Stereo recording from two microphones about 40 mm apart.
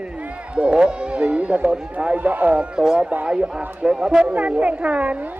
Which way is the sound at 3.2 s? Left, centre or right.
Right.